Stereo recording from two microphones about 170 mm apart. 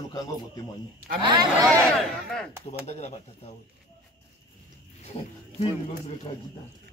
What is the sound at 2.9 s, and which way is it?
Speech, 40° left (ahead or behind).